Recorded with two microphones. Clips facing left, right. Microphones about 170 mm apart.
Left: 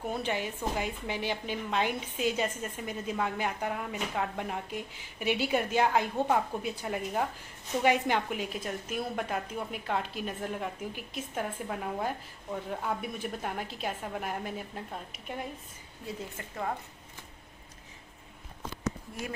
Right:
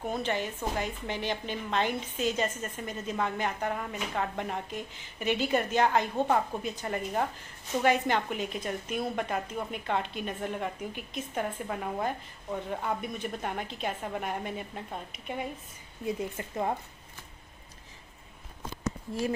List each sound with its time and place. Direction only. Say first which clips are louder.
0.1 s a woman's voice: right 2 dB; 10° left (ahead or behind)
16.3 s a woman's voice: right 4 dB; 20° right (ahead or behind)